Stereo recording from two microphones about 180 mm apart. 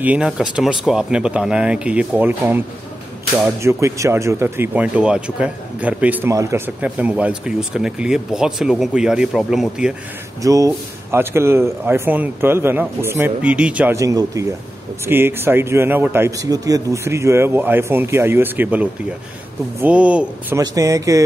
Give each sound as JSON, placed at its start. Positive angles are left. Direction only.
{"t": 0.0, "sound": "speech", "side_deg": -5}
{"t": 3.6, "sound": "speech", "side_deg": -15}
{"t": 10.4, "sound": "speech", "side_deg": -20}
{"t": 13.9, "sound": "speech", "side_deg": -20}
{"t": 20.5, "sound": "speech", "side_deg": -20}